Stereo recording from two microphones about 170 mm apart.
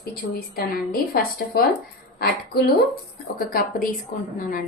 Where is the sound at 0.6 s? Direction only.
60° left (ahead or behind).